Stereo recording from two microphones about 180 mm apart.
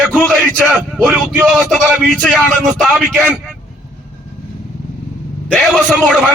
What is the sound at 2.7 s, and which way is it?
Speech, 5° right (ahead or behind).